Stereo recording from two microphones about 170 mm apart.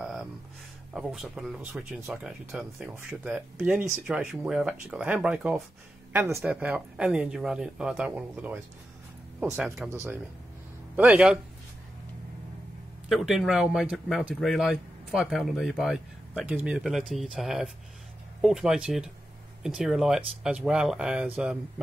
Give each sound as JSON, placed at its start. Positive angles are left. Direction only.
{"t": 0.0, "sound": "a sound", "side_deg": 0}
{"t": 0.9, "sound": "speech", "side_deg": 0}
{"t": 13.1, "sound": "speech", "side_deg": 0}